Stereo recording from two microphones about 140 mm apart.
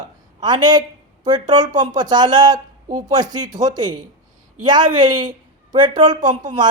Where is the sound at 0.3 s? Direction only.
30° right (ahead or behind).